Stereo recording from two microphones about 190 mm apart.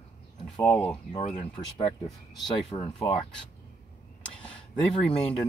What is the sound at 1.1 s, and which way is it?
Speech, 30° left (ahead or behind).